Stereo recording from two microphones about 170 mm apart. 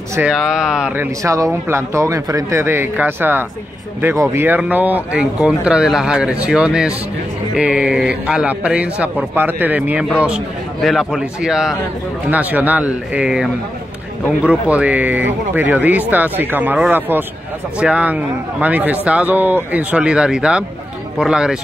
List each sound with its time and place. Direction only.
0.3 s a man's voice: 5° right (ahead or behind)
1.2 s a man's voice: 20° right (ahead or behind)